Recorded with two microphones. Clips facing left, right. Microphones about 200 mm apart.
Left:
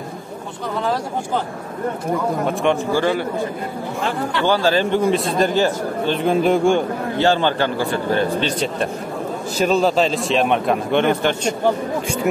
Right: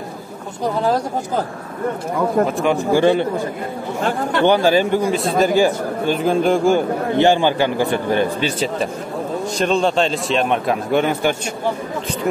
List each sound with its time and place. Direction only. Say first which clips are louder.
0.8 s speech: right 1 dB; 40° right (ahead or behind)
2.4 s a man's voice: right 1 dB; centre (ahead or behind)
2.9 s a man's voice: right 4 dB; 20° right (ahead or behind)
4.0 s speech: right 4 dB; 50° right (ahead or behind)
4.5 s a man's voice: right 2 dB; 15° right (ahead or behind)
5.0 s a man's voice: even; centre (ahead or behind)
7.2 s a man's voice: right 2 dB; 15° right (ahead or behind)